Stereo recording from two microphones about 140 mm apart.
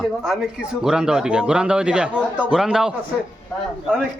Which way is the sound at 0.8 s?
5° right (ahead or behind).